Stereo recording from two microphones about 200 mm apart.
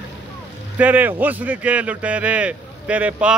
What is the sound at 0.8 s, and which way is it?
Speech, 10° right (ahead or behind).